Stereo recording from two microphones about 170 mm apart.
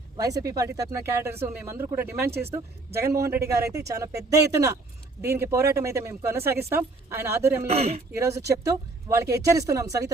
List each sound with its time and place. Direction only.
0.2 s speech: 20° right (ahead or behind)
7.7 s speech: 40° right (ahead or behind)
8.2 s speech: 20° right (ahead or behind)